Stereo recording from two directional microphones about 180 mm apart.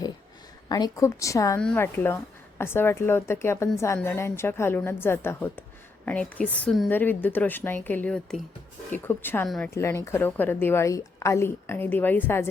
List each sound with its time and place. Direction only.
0.7 s a woman's voice: 20° left (ahead or behind)
1.5 s a woman's voice: 5° left (ahead or behind)